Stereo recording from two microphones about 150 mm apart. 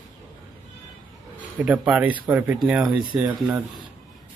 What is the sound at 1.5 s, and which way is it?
Speech, 10° right (ahead or behind).